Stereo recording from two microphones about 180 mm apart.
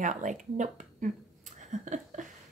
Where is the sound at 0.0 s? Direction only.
45° right (ahead or behind).